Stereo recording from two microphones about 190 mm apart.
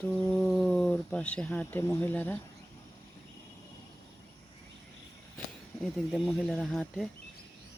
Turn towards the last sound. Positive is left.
turn(degrees=0)  # may be behind; listen again after turning